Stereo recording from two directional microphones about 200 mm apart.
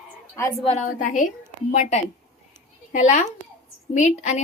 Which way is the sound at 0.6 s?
35° left (ahead or behind).